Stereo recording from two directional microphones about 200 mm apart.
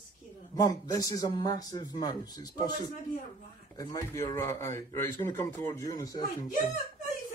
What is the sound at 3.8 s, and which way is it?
Speech, 20° left (ahead or behind).